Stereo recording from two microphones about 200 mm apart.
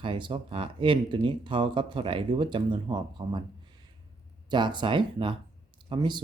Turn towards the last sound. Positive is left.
turn(degrees=-20)  # may be behind; listen again after turning